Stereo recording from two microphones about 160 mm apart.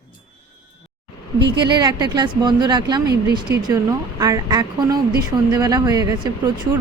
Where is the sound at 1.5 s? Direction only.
30° right (ahead or behind).